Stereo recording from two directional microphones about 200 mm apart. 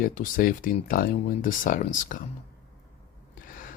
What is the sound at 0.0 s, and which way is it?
Speech, 45° left (ahead or behind).